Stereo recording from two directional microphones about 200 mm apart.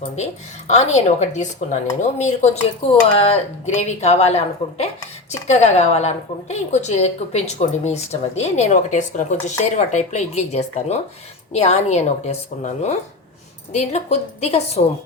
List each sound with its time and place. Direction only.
0.7 s a woman's voice: 35° left (ahead or behind)
3.8 s a woman's voice: 35° left (ahead or behind)